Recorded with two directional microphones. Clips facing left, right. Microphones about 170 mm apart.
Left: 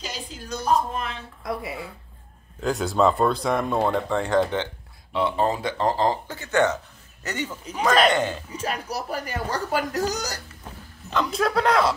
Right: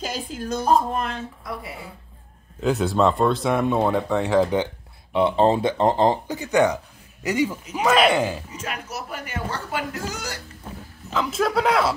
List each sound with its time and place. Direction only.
0.0 s music: 50° right (ahead or behind)
0.7 s speech: 45° right (ahead or behind)
2.6 s speech: centre (ahead or behind)
5.1 s speech: 20° right (ahead or behind)
8.5 s speech: 35° left (ahead or behind)
11.1 s speech: 5° right (ahead or behind)